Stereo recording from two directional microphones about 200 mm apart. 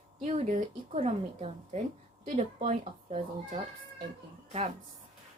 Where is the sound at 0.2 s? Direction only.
35° right (ahead or behind).